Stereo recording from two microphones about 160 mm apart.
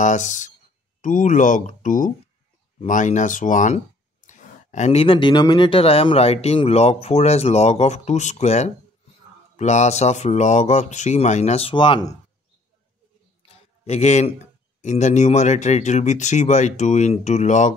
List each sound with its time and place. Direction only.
0.0 s speech: 50° left (ahead or behind); by 12.1 s 30° left (ahead or behind)
13.4 s a sound: 40° left (ahead or behind)
14.8 s speech: 45° left (ahead or behind)